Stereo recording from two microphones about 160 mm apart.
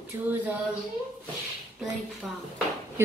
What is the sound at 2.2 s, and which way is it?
Speech, centre (ahead or behind).